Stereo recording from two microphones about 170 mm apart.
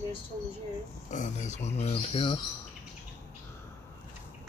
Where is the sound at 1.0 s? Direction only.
45° left (ahead or behind).